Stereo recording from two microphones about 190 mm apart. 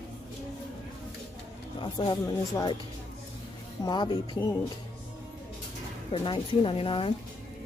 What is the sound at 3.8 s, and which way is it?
Speech, 25° left (ahead or behind).